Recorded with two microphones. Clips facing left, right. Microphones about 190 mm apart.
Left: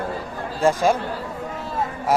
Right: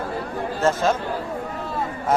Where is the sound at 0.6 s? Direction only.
10° left (ahead or behind).